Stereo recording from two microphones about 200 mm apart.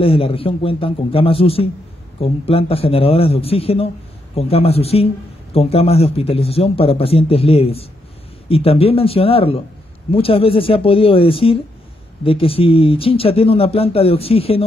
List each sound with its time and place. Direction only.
0.0 s speech: 30° left (ahead or behind)